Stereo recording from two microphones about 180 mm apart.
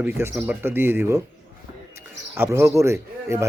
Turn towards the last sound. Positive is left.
turn(degrees=-15)  # may be behind; listen again after turning